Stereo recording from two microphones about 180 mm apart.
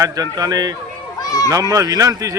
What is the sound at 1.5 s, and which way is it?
Speech, 20° right (ahead or behind).